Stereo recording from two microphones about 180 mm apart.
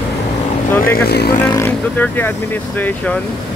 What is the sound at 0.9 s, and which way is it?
Speech, 60° left (ahead or behind).